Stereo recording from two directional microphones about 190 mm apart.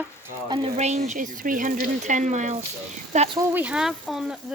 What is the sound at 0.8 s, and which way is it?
Speech, 35° right (ahead or behind).